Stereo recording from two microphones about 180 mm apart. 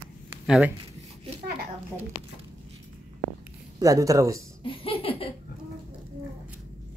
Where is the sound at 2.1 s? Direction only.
25° left (ahead or behind).